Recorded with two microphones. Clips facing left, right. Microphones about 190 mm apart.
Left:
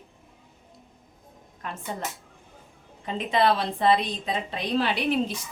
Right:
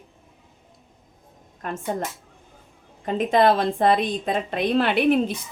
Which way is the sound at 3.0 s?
50° right (ahead or behind).